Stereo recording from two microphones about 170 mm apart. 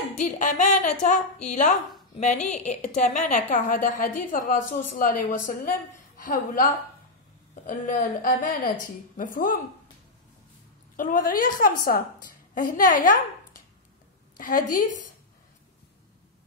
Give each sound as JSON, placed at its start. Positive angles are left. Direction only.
{"t": 0.2, "sound": "a woman's voice", "side_deg": 50}
{"t": 11.0, "sound": "a woman's voice", "side_deg": 50}
{"t": 14.3, "sound": "a woman's voice", "side_deg": 55}